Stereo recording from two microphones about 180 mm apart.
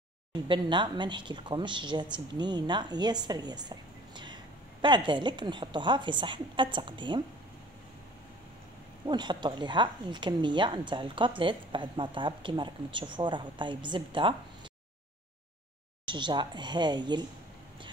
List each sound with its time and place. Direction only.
0.3 s speech: 25° right (ahead or behind)
9.0 s speech: 25° right (ahead or behind)
16.1 s speech: 25° right (ahead or behind)